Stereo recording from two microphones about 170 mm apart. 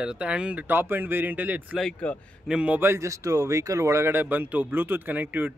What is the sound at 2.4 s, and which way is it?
Speech, 5° right (ahead or behind).